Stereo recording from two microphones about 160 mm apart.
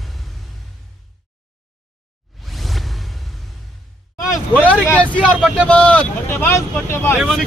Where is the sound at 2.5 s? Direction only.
Centre (ahead or behind).